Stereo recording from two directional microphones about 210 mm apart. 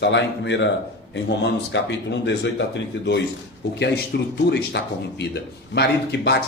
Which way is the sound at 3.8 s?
50° left (ahead or behind).